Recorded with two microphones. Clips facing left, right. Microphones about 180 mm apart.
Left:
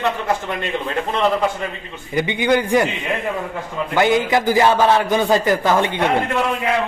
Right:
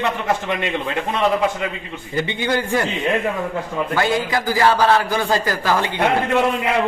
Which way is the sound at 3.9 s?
20° left (ahead or behind).